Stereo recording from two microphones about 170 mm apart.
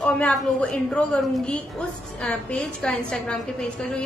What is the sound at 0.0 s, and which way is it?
A woman's voice, 5° left (ahead or behind).